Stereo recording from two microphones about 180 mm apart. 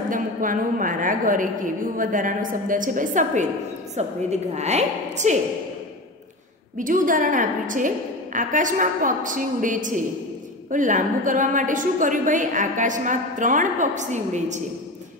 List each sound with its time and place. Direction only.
0.1 s a woman's voice: 50° right (ahead or behind)
6.8 s a woman's voice: 45° right (ahead or behind)